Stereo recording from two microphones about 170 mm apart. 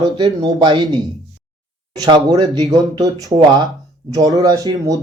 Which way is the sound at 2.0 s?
25° right (ahead or behind).